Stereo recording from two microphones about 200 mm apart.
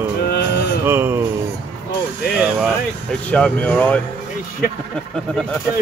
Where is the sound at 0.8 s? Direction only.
10° right (ahead or behind).